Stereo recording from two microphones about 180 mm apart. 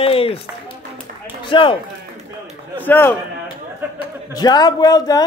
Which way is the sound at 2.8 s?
10° left (ahead or behind).